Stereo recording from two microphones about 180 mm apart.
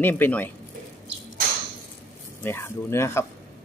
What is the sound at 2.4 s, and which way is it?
Speech, 15° left (ahead or behind).